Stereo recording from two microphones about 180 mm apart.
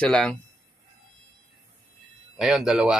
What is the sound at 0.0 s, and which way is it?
Speech, 5° left (ahead or behind).